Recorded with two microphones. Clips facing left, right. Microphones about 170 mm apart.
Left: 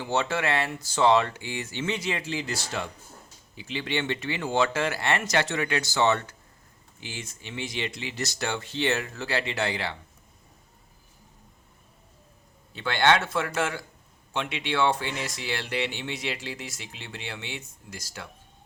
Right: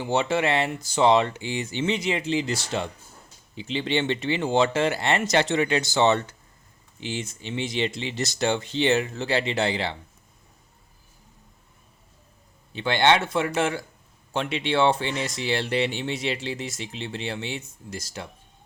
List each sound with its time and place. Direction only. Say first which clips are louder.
0.0 s speech: right 4 dB; 15° right (ahead or behind)
12.7 s speech: right 2 dB; 20° right (ahead or behind)